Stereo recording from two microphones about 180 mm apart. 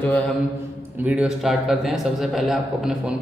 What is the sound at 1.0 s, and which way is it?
A man's voice, 5° right (ahead or behind).